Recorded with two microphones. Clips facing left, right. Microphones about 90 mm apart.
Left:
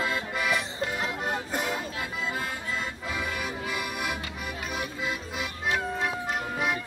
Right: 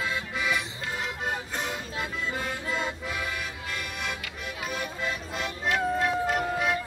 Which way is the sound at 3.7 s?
5° left (ahead or behind).